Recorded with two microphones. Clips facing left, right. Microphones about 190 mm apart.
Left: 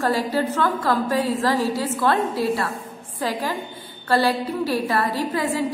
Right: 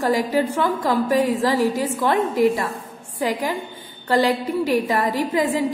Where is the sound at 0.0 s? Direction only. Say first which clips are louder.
Right 2 dB; 15° right (ahead or behind).